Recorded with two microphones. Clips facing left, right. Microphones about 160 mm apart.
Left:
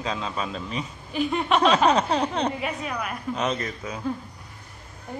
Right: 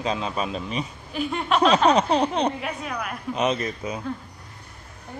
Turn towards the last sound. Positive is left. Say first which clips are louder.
# right 3 dB
turn(degrees=-20)  # may be behind; listen again after turning